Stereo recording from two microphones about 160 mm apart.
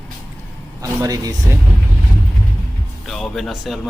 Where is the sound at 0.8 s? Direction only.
20° right (ahead or behind).